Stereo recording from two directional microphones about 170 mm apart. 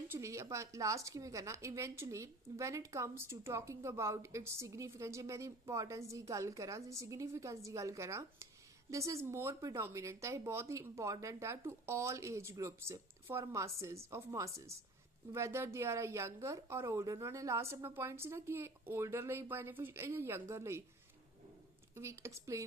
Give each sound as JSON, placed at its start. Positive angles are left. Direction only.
{"t": 0.1, "sound": "a woman's voice", "side_deg": -15}
{"t": 21.9, "sound": "a woman's voice", "side_deg": -15}